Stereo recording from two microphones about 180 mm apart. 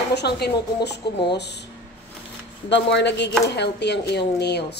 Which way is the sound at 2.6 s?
75° left (ahead or behind).